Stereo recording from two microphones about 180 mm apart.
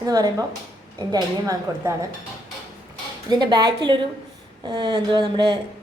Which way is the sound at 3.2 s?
25° right (ahead or behind).